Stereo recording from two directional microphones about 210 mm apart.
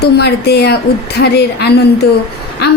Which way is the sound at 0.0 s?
50° left (ahead or behind).